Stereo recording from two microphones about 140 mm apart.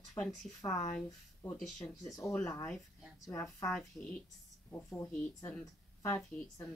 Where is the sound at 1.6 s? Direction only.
Centre (ahead or behind).